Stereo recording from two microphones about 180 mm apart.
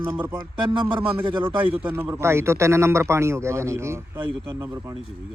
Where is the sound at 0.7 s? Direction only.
25° right (ahead or behind).